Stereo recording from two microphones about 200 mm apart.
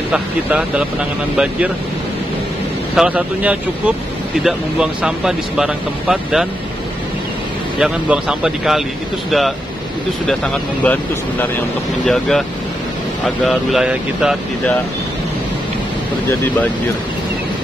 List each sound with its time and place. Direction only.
0.1 s speech: 5° right (ahead or behind)
3.0 s speech: 5° right (ahead or behind)
7.8 s speech: 5° right (ahead or behind)
10.2 s speech: 5° left (ahead or behind)
13.5 s speech: centre (ahead or behind)